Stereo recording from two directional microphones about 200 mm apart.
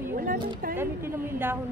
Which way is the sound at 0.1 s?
45° right (ahead or behind).